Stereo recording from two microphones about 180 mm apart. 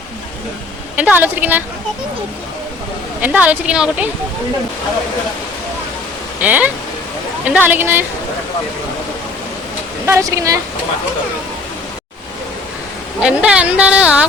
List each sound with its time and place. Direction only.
0.9 s a woman's voice: 10° right (ahead or behind)
3.2 s a woman's voice: 10° right (ahead or behind)
6.4 s a woman's voice: 10° right (ahead or behind)
10.1 s a woman's voice: 15° right (ahead or behind)
13.2 s a woman's voice: 5° right (ahead or behind)